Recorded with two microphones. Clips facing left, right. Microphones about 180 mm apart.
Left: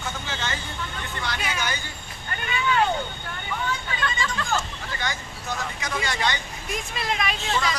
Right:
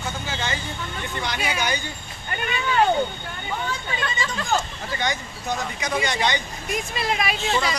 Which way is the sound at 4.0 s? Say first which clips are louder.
Even; 20° right (ahead or behind).